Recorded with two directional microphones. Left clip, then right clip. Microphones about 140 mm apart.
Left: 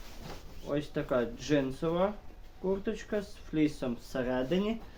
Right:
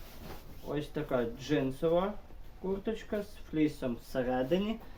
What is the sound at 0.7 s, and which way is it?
Speech, 40° left (ahead or behind).